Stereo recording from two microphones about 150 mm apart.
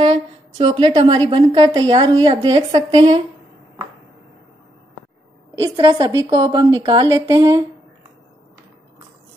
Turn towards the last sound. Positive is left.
turn(degrees=-25)  # may be behind; listen again after turning